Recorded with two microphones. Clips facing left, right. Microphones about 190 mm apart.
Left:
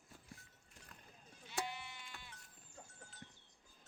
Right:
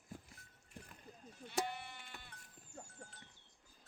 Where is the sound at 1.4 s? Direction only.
55° right (ahead or behind).